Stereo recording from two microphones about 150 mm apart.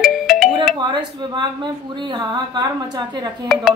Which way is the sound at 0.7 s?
30° right (ahead or behind).